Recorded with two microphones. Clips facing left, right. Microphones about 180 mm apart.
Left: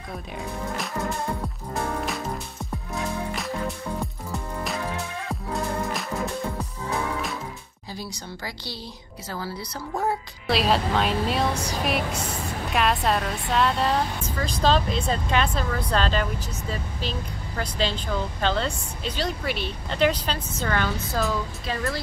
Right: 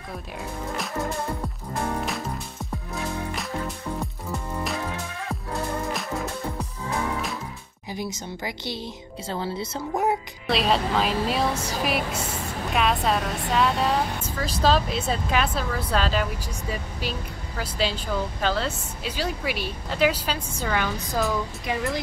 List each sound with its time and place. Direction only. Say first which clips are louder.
2.0 s music: left 1 dB; centre (ahead or behind)
7.9 s a woman's voice: right 4 dB; 20° right (ahead or behind)
10.4 s a woman's voice: left 1 dB; centre (ahead or behind); by 22.0 s 15° right (ahead or behind)